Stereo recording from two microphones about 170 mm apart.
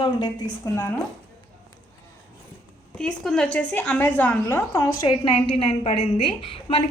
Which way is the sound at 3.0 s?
5° left (ahead or behind).